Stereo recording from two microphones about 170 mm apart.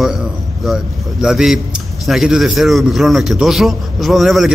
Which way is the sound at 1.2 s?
Centre (ahead or behind).